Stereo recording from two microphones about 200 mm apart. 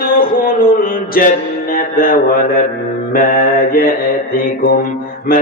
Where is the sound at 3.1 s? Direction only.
45° left (ahead or behind).